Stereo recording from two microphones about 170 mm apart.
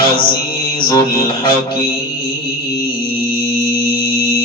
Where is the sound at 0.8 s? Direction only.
25° left (ahead or behind).